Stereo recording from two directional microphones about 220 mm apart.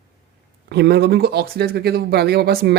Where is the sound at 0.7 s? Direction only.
50° right (ahead or behind).